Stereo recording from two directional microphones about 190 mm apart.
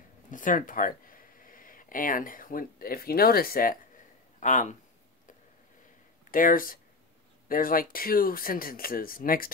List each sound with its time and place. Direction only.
0.3 s speech: 45° left (ahead or behind)
6.3 s speech: 45° left (ahead or behind)